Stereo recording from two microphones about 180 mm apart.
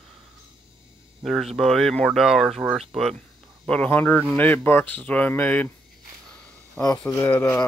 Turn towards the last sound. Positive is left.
turn(degrees=15)  # may be behind; listen again after turning